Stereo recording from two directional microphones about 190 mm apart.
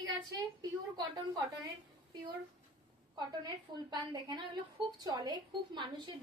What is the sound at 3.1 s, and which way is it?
A woman's voice, 20° right (ahead or behind).